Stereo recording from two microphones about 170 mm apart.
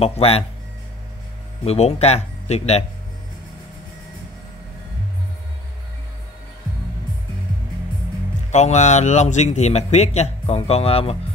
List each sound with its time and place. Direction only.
0.0 s a man's voice: 35° left (ahead or behind)
1.6 s a man's voice: 35° left (ahead or behind)
8.5 s a man's voice: 45° left (ahead or behind)